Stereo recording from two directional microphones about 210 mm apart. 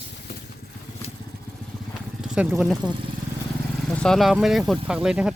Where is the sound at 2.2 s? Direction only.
5° right (ahead or behind).